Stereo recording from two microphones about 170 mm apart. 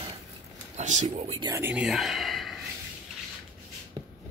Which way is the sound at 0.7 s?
45° right (ahead or behind).